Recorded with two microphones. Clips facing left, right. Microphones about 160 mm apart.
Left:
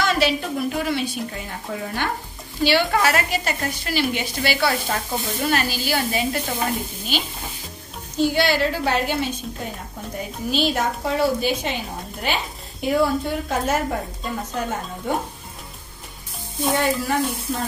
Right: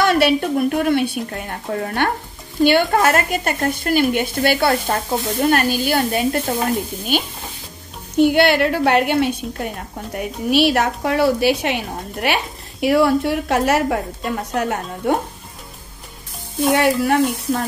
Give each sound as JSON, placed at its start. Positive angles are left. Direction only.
{"t": 0.0, "sound": "a woman's voice", "side_deg": -60}
{"t": 8.2, "sound": "a woman's voice", "side_deg": -60}
{"t": 16.7, "sound": "a woman's voice", "side_deg": -65}